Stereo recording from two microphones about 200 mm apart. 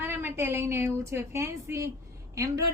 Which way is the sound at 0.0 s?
10° right (ahead or behind).